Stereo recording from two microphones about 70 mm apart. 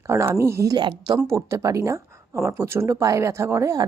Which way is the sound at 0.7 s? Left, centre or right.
Right.